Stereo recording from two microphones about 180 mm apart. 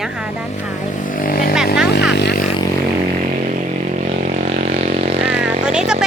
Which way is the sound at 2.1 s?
70° left (ahead or behind).